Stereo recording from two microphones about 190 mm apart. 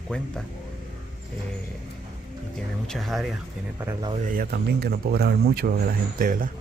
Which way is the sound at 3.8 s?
15° right (ahead or behind).